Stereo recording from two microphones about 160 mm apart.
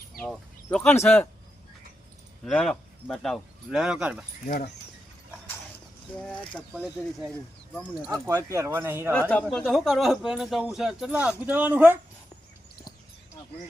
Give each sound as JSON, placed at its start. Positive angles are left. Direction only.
{"t": 0.1, "sound": "a sound", "side_deg": 5}
{"t": 0.8, "sound": "speech", "side_deg": 10}
{"t": 2.4, "sound": "speech", "side_deg": 5}
{"t": 4.4, "sound": "speech", "side_deg": 55}
{"t": 6.2, "sound": "speech", "side_deg": 5}
{"t": 6.7, "sound": "speech", "side_deg": -10}
{"t": 9.3, "sound": "speech", "side_deg": 5}